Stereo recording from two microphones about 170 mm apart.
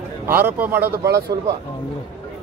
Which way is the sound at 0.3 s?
15° right (ahead or behind).